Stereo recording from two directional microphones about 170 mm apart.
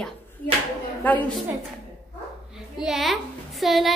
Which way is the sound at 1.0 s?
10° left (ahead or behind).